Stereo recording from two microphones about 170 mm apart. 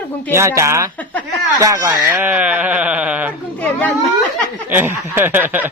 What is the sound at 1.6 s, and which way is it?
Speech, 20° right (ahead or behind).